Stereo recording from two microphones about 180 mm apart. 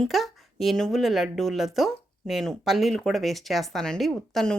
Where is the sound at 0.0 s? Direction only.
Centre (ahead or behind).